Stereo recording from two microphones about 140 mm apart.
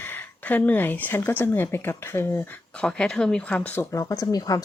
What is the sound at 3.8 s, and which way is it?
Speech, 20° left (ahead or behind).